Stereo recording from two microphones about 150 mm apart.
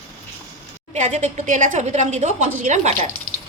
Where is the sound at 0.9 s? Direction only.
50° right (ahead or behind).